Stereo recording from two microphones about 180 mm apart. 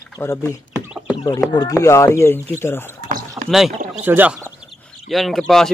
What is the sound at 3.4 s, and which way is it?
Rowboat, 20° right (ahead or behind).